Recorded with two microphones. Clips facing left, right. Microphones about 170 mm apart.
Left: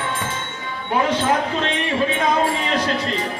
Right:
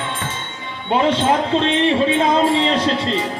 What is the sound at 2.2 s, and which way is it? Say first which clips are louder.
Speech: right 4 dB; 25° right (ahead or behind).